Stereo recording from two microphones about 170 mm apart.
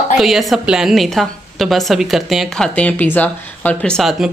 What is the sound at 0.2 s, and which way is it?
A woman's voice, centre (ahead or behind).